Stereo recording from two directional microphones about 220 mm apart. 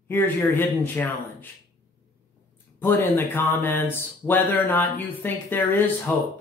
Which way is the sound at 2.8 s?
10° left (ahead or behind).